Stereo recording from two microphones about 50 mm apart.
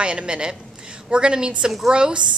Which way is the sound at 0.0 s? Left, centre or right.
Right.